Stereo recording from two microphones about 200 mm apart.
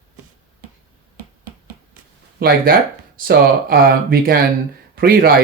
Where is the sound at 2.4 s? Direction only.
50° right (ahead or behind).